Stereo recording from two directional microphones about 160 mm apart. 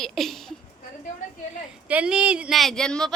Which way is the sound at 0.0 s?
Centre (ahead or behind).